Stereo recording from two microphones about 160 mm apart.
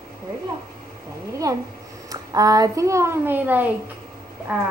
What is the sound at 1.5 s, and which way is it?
A woman's voice, 20° right (ahead or behind).